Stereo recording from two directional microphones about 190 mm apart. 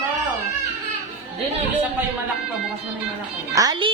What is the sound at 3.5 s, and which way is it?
Speech, 20° right (ahead or behind).